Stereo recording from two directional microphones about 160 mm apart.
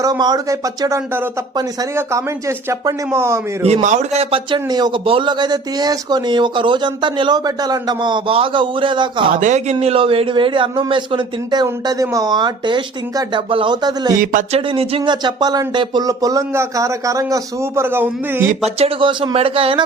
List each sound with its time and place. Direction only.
0.0 s a man's voice: 25° right (ahead or behind)
3.6 s a man's voice: 45° right (ahead or behind)
9.3 s speech: 50° right (ahead or behind)
9.7 s a man's voice: 35° right (ahead or behind)
14.5 s a man's voice: 35° right (ahead or behind); by 18.4 s 15° right (ahead or behind)
18.6 s speech: 35° right (ahead or behind)